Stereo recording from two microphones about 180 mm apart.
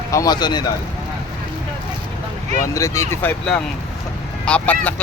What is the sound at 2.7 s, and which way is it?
Speech, 15° left (ahead or behind).